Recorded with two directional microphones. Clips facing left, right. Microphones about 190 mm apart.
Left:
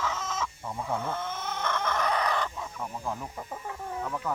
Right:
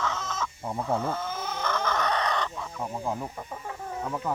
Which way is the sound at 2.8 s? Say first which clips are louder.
Right 4 dB; 25° right (ahead or behind).